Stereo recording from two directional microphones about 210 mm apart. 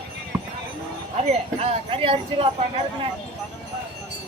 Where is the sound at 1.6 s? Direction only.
25° right (ahead or behind).